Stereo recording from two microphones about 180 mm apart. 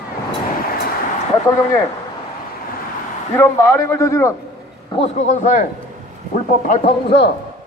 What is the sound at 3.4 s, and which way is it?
Speech, 10° left (ahead or behind).